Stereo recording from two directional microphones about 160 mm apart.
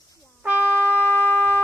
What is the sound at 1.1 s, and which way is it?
Shofar, 10° left (ahead or behind).